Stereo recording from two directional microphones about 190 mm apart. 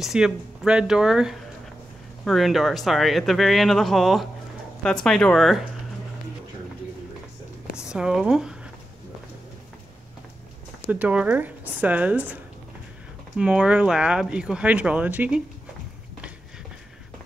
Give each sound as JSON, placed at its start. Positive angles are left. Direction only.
{"t": 0.0, "sound": "speech", "side_deg": -5}
{"t": 7.7, "sound": "speech", "side_deg": -5}
{"t": 10.9, "sound": "speech", "side_deg": -5}
{"t": 13.4, "sound": "speech", "side_deg": -5}